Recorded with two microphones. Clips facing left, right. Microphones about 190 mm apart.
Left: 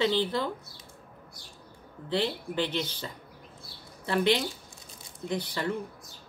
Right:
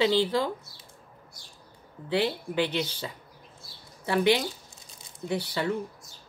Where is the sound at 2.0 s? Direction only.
10° right (ahead or behind).